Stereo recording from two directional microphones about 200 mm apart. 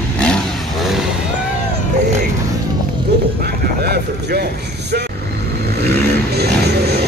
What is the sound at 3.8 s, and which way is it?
Vehicle, 55° right (ahead or behind).